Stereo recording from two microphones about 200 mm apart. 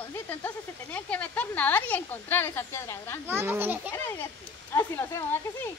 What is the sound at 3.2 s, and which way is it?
Speech, 10° right (ahead or behind).